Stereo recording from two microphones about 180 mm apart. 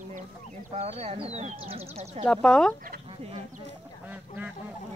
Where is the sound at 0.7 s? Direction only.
40° right (ahead or behind).